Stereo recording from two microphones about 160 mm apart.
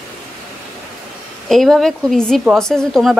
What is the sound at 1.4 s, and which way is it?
A woman's voice, centre (ahead or behind).